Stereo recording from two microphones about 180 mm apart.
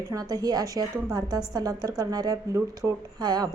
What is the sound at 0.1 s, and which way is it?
A woman's voice, 20° right (ahead or behind).